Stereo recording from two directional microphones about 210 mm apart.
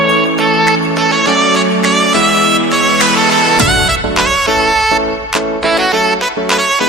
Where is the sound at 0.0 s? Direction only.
Centre (ahead or behind).